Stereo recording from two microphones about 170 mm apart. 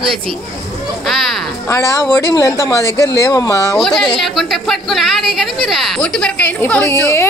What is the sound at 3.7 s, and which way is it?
Speech, centre (ahead or behind).